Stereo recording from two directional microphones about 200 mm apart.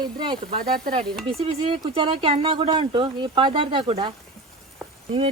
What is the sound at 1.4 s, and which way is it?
Speech, 25° right (ahead or behind).